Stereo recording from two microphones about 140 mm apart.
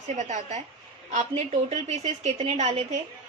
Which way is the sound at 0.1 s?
60° right (ahead or behind).